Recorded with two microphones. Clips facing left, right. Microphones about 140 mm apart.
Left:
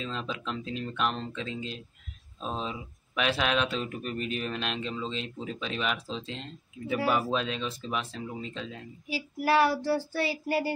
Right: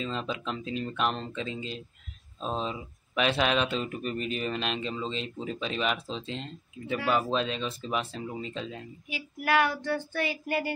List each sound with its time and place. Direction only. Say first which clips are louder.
0.0 s speech: right 2 dB; centre (ahead or behind)
9.1 s child singing: left 2 dB; 35° left (ahead or behind)